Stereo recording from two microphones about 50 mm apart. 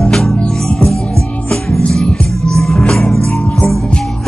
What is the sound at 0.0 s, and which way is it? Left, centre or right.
Music, centre.